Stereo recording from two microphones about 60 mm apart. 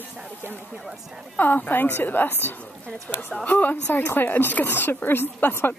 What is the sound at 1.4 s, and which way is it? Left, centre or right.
A woman's voice, left.